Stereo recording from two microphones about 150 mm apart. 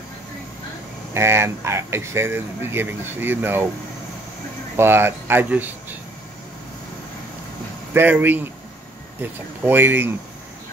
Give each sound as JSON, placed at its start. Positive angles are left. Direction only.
{"t": 1.1, "sound": "speech", "side_deg": -15}
{"t": 4.7, "sound": "speech", "side_deg": -15}
{"t": 7.9, "sound": "speech", "side_deg": -15}